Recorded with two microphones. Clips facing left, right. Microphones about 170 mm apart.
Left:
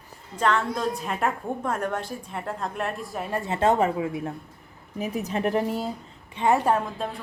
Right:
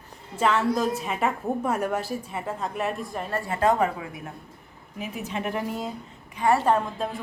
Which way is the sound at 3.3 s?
20° left (ahead or behind).